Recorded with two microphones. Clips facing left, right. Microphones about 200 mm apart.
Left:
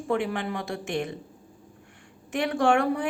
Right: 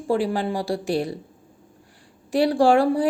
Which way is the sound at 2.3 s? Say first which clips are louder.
Right 6 dB; 35° right (ahead or behind).